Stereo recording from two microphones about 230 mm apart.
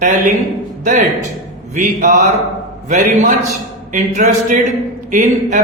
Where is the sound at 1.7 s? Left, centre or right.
Right.